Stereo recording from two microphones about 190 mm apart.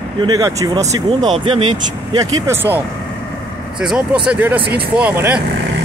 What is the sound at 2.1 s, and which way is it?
Speech, 15° right (ahead or behind).